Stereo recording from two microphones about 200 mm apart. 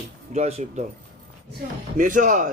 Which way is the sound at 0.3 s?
35° right (ahead or behind).